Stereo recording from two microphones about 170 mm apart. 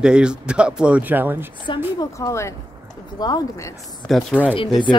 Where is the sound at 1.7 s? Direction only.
30° left (ahead or behind).